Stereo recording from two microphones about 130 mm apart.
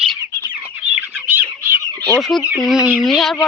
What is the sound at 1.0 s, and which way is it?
Bird, 15° right (ahead or behind).